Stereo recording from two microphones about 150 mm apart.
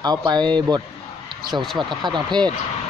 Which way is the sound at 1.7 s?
30° right (ahead or behind).